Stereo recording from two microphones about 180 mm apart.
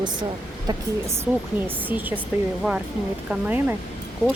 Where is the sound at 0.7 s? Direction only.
15° right (ahead or behind).